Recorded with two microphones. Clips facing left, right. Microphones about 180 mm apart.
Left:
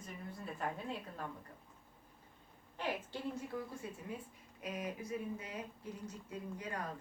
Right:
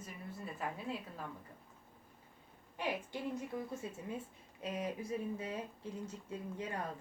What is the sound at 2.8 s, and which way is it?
A woman's voice, 15° right (ahead or behind).